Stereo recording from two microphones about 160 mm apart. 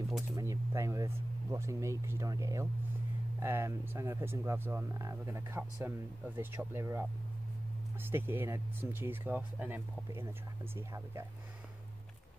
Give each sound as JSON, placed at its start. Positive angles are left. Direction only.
{"t": 0.4, "sound": "speech", "side_deg": -20}